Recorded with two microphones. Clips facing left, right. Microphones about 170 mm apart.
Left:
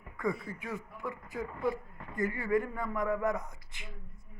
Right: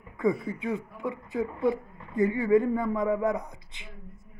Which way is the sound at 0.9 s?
20° right (ahead or behind).